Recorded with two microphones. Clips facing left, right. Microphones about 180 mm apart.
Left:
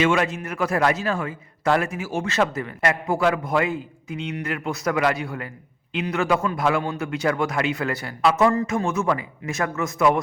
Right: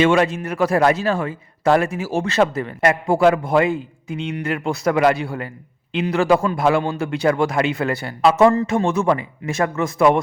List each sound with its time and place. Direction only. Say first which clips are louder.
0.0 s a man's voice: right 5 dB; 30° right (ahead or behind)